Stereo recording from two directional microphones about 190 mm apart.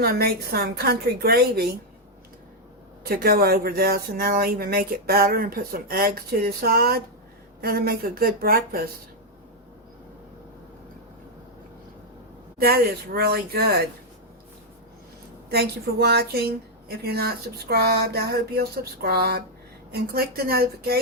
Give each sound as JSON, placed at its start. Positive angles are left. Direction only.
{"t": 0.0, "sound": "speech", "side_deg": -55}
{"t": 3.0, "sound": "speech", "side_deg": -50}
{"t": 12.5, "sound": "speech", "side_deg": -55}
{"t": 15.4, "sound": "speech", "side_deg": -55}